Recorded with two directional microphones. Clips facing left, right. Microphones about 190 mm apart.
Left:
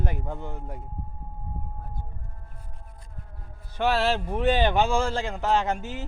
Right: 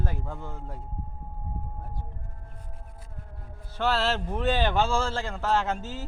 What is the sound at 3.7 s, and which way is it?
Speech, 15° left (ahead or behind).